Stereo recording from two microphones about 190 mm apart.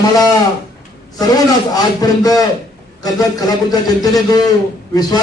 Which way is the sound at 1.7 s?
20° left (ahead or behind).